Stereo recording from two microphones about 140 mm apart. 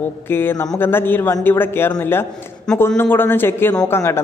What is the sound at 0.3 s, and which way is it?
A man's voice, 15° left (ahead or behind).